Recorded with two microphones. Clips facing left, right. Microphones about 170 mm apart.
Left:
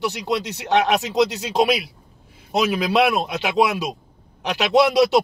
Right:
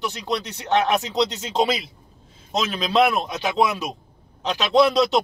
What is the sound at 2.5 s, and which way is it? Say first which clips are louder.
Speech: left 2 dB; 15° left (ahead or behind).